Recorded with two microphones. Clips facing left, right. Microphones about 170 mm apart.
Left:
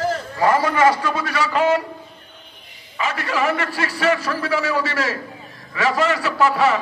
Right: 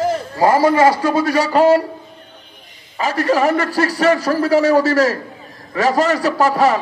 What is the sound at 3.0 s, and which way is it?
A man's voice, 40° right (ahead or behind).